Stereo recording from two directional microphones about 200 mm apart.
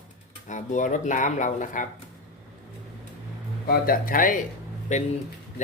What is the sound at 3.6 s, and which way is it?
Speech, 45° left (ahead or behind).